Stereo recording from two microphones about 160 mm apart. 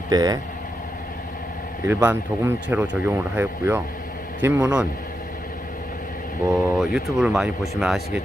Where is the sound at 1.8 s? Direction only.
10° right (ahead or behind).